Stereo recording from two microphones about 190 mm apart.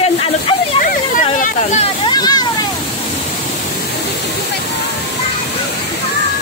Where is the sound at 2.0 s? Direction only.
20° left (ahead or behind).